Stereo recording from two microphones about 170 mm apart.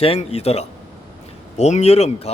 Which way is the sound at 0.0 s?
35° left (ahead or behind).